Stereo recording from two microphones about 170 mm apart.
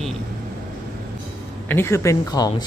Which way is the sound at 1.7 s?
15° left (ahead or behind).